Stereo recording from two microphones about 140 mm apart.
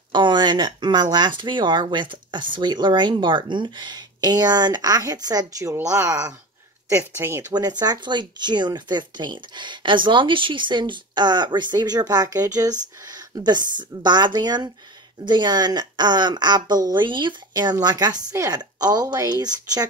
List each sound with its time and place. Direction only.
0.1 s speech: 35° right (ahead or behind); by 7.5 s 20° right (ahead or behind)
7.5 s speech: 30° right (ahead or behind)